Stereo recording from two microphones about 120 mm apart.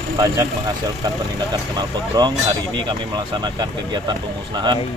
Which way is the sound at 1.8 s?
35° right (ahead or behind).